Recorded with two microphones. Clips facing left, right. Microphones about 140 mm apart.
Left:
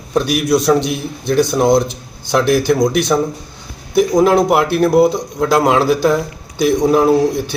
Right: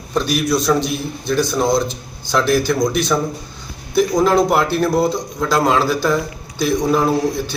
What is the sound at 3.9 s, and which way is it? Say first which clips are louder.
Speech: left 3 dB; 20° left (ahead or behind).